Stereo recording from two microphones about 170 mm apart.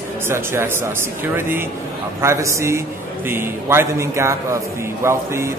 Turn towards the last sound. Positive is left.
turn(degrees=-15)  # may be behind; listen again after turning